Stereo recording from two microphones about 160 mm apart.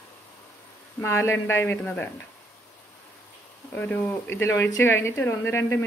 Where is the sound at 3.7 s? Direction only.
10° left (ahead or behind).